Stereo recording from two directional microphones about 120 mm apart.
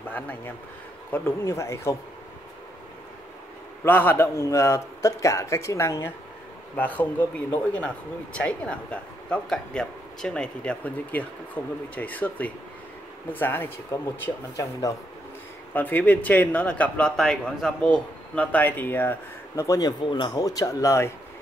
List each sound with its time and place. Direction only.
1.1 s a man's voice: 20° left (ahead or behind)
3.8 s a man's voice: 15° left (ahead or behind)
15.7 s speech: 15° left (ahead or behind)